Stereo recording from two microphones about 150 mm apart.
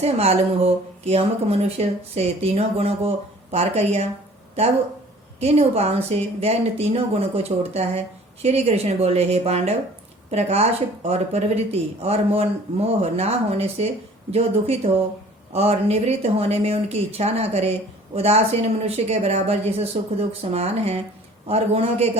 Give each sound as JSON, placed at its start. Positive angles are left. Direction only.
{"t": 0.0, "sound": "speech", "side_deg": -45}
{"t": 5.4, "sound": "speech", "side_deg": -45}